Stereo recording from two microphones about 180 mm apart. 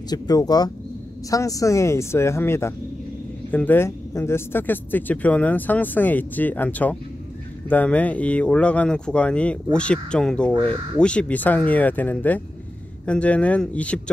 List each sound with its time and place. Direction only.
0.1 s speech: 20° left (ahead or behind)